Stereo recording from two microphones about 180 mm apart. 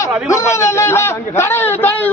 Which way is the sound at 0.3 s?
15° left (ahead or behind).